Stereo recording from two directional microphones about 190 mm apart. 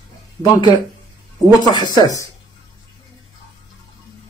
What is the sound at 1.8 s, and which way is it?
Speech, 20° right (ahead or behind).